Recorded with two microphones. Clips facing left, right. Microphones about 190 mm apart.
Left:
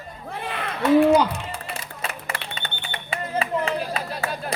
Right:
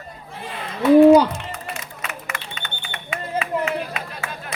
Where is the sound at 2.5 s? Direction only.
35° left (ahead or behind).